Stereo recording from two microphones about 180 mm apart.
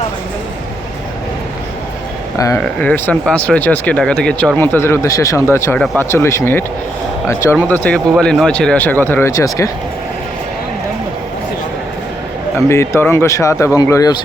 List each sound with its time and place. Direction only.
2.6 s speech: 5° left (ahead or behind)
7.7 s speech: 10° left (ahead or behind)
12.6 s speech: 15° left (ahead or behind)